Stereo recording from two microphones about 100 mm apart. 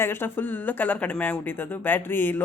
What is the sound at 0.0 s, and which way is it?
Speech, 25° left (ahead or behind).